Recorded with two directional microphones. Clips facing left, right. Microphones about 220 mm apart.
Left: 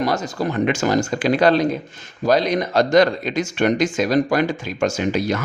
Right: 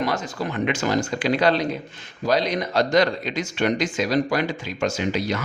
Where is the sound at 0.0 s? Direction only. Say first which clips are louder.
Left 4 dB; 40° left (ahead or behind).